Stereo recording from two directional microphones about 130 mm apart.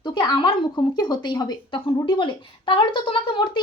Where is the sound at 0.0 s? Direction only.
40° left (ahead or behind).